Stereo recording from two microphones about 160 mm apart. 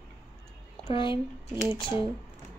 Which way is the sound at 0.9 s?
30° left (ahead or behind).